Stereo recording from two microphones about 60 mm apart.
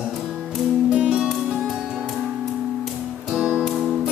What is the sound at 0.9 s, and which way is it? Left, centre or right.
Music, centre.